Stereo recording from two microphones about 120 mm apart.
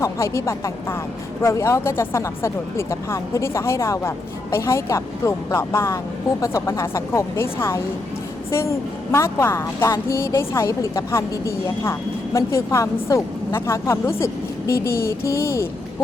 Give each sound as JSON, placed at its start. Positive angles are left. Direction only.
{"t": 0.0, "sound": "speech", "side_deg": 25}